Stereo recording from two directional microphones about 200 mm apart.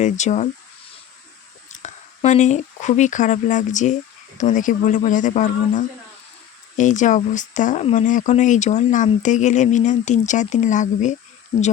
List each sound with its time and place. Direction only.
0.0 s speech: 35° left (ahead or behind)
1.7 s speech: 35° left (ahead or behind)